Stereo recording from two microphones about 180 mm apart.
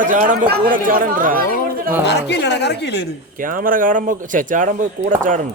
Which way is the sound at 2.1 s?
70° left (ahead or behind).